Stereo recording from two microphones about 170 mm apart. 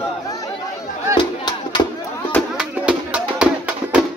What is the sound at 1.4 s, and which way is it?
Battle cry, 25° left (ahead or behind).